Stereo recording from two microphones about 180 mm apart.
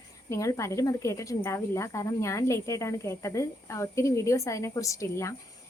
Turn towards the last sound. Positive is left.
turn(degrees=15)  # may be behind; listen again after turning